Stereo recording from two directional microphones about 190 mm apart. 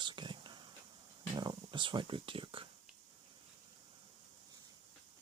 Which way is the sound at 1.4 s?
25° right (ahead or behind).